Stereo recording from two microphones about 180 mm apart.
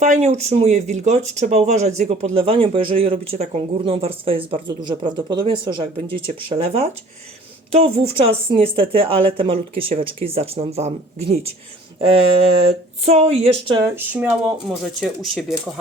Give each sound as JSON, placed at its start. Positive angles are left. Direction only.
{"t": 0.0, "sound": "speech", "side_deg": -40}
{"t": 13.9, "sound": "speech", "side_deg": -10}